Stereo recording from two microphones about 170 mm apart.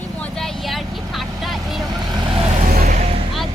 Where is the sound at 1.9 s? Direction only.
25° right (ahead or behind).